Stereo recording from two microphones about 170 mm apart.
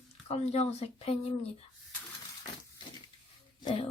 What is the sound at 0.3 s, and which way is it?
Speech, 40° left (ahead or behind).